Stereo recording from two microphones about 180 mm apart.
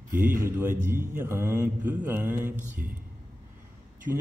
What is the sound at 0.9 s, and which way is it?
Mantra, 10° right (ahead or behind).